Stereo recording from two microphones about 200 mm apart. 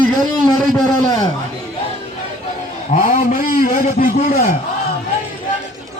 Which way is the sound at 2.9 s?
35° left (ahead or behind).